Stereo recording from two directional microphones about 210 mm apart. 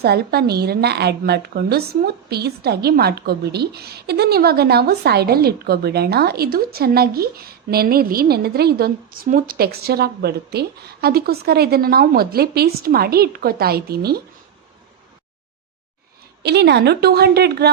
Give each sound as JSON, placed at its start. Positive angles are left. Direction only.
{"t": 0.0, "sound": "a woman's voice", "side_deg": -50}
{"t": 16.4, "sound": "a woman's voice", "side_deg": -50}